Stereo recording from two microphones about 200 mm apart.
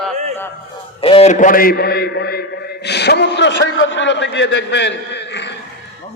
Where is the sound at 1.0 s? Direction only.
30° left (ahead or behind); by 5.5 s 60° left (ahead or behind).